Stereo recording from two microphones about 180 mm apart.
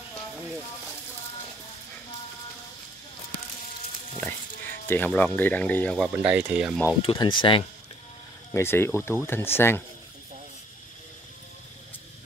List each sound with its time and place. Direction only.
4.2 s speech: 10° left (ahead or behind)
5.9 s speech: 5° right (ahead or behind)
7.0 s speech: 25° left (ahead or behind)
8.5 s speech: 15° left (ahead or behind)